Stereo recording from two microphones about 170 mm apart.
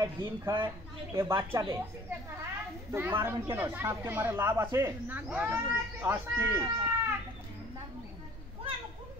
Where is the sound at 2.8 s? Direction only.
15° right (ahead or behind).